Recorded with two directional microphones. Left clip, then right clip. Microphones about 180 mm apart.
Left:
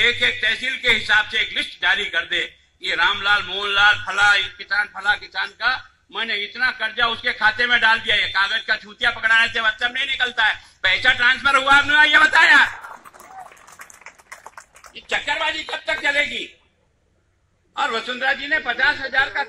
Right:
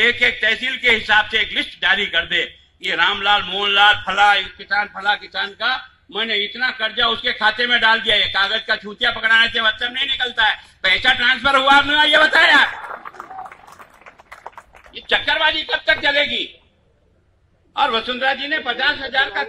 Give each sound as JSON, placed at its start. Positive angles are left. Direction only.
{"t": 0.0, "sound": "a man's voice", "side_deg": -40}
{"t": 15.0, "sound": "speech", "side_deg": -10}
{"t": 17.7, "sound": "a man's voice", "side_deg": 15}